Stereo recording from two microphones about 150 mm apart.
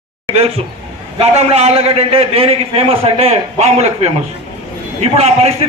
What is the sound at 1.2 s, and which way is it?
A man's voice, 45° right (ahead or behind).